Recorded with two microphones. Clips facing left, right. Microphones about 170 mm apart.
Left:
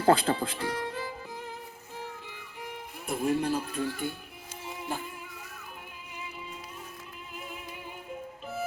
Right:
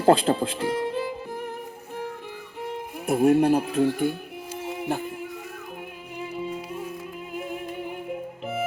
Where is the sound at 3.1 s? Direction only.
60° right (ahead or behind).